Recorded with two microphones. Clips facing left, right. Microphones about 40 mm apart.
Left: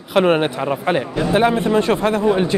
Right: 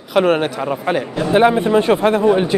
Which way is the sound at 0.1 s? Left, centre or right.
Centre.